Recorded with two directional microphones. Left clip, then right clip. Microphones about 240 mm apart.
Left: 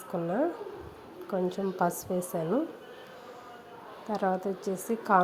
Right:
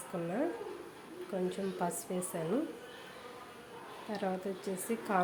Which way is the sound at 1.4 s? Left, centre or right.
Centre.